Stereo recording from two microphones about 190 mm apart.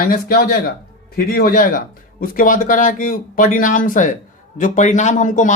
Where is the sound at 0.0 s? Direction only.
50° left (ahead or behind).